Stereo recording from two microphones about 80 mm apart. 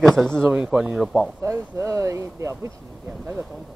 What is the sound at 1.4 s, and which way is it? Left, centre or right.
Speech, right.